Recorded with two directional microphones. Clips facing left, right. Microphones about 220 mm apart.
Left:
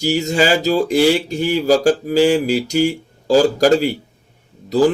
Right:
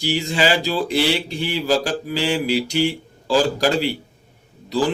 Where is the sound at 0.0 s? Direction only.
40° left (ahead or behind).